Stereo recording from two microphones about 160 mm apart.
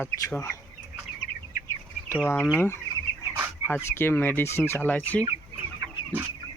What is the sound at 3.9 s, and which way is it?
Speech, 15° left (ahead or behind).